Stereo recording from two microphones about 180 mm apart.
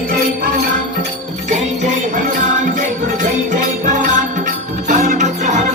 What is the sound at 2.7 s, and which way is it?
Music, 45° right (ahead or behind).